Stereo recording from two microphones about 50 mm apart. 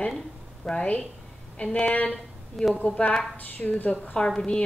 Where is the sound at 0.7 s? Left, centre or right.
Left.